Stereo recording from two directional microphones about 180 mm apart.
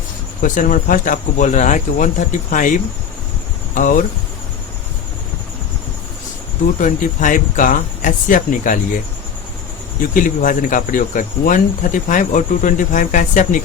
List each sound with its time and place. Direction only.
0.4 s speech: 50° left (ahead or behind)
3.8 s speech: 50° left (ahead or behind)
6.7 s speech: 45° left (ahead or behind)
10.2 s speech: 50° left (ahead or behind)